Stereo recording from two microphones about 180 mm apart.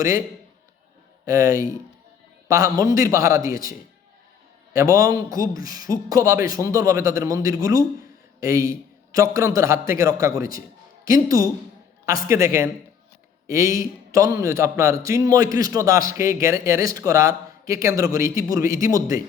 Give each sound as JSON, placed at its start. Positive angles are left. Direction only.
{"t": 1.2, "sound": "a man's voice", "side_deg": -15}